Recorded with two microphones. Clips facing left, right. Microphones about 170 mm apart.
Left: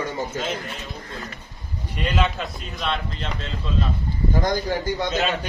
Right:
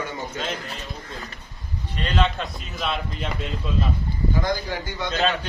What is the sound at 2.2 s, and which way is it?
A man's voice, centre (ahead or behind).